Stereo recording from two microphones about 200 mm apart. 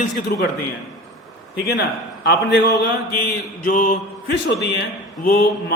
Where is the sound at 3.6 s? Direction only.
45° left (ahead or behind).